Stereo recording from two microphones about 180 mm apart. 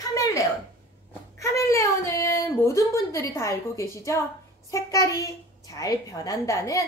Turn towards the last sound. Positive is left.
turn(degrees=15)  # may be behind; listen again after turning